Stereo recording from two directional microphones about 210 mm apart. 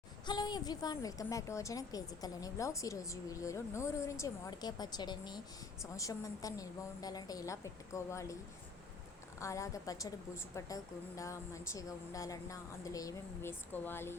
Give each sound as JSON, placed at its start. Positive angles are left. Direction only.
{"t": 0.3, "sound": "a woman's voice", "side_deg": 20}
{"t": 9.4, "sound": "a woman's voice", "side_deg": 15}